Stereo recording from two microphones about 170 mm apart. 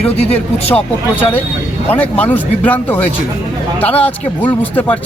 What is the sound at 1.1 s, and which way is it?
Speech, 10° left (ahead or behind).